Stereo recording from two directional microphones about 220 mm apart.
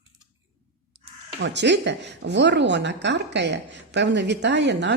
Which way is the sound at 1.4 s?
50° right (ahead or behind).